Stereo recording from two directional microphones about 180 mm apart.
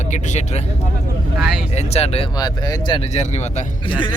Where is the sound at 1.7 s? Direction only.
35° left (ahead or behind).